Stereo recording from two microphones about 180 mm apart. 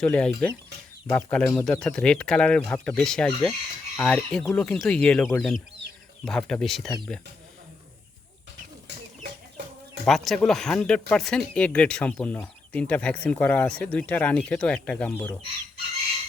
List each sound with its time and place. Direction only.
0.0 s speech: 5° left (ahead or behind)
9.6 s bird: 65° right (ahead or behind)
10.1 s speech: centre (ahead or behind)